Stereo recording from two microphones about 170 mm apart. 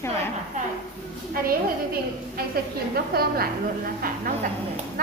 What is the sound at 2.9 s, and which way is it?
Speech, 65° right (ahead or behind).